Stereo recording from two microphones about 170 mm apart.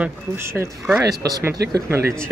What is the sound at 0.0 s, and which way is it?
Speech, 15° right (ahead or behind).